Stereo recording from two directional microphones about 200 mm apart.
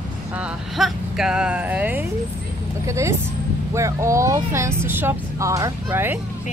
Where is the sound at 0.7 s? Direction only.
Centre (ahead or behind).